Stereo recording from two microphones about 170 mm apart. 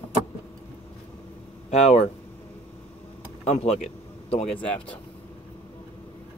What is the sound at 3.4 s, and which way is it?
Speech, 40° left (ahead or behind).